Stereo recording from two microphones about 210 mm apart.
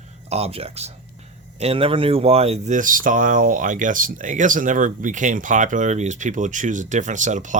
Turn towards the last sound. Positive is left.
turn(degrees=-35)  # may be behind; listen again after turning